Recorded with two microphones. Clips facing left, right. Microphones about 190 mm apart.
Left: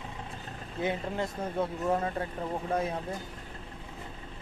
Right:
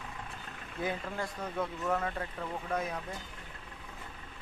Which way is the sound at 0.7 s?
25° left (ahead or behind).